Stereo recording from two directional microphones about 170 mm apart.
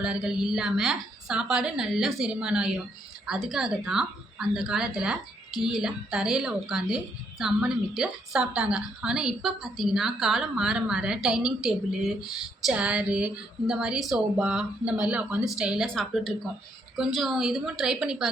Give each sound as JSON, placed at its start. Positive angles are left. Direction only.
{"t": 0.0, "sound": "a woman's voice", "side_deg": -5}